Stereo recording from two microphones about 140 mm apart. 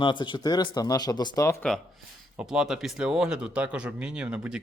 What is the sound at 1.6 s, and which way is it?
Speech, 5° left (ahead or behind).